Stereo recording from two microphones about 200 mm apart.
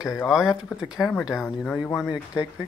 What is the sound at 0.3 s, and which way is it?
Speech, centre (ahead or behind).